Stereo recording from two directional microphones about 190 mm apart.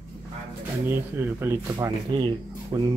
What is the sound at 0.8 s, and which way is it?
Speech, 10° right (ahead or behind).